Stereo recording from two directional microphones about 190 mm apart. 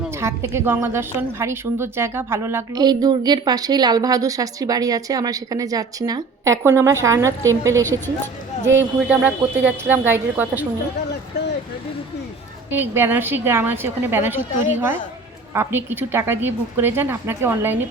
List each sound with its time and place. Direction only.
0.2 s a woman's voice: 15° right (ahead or behind)
12.7 s a woman's voice: 10° right (ahead or behind)